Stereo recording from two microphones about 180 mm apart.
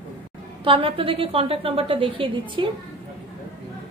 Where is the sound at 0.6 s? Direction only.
30° right (ahead or behind).